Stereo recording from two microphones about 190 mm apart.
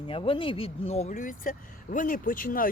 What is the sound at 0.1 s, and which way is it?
Speech, 30° left (ahead or behind).